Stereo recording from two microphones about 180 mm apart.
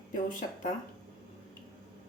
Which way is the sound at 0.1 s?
45° left (ahead or behind).